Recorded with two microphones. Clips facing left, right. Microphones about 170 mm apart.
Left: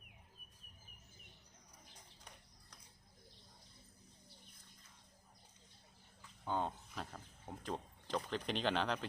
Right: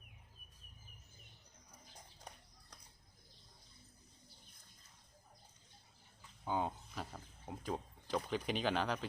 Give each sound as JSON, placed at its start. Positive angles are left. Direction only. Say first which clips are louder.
{"t": 6.4, "sound": "speech", "louder": "right 1 dB", "side_deg": -10}